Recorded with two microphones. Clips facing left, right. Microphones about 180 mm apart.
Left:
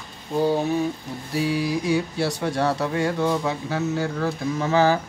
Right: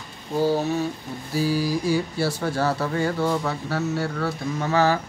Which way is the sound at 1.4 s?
30° right (ahead or behind).